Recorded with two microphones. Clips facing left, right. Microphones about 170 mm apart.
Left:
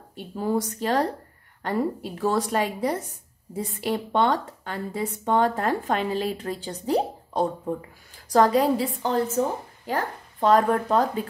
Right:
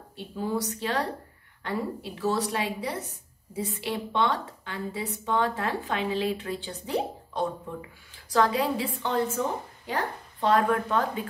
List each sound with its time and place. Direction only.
0.1 s a woman's voice: 45° left (ahead or behind)